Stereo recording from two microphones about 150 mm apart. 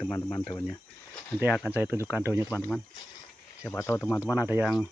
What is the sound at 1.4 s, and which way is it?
Speech, 5° right (ahead or behind).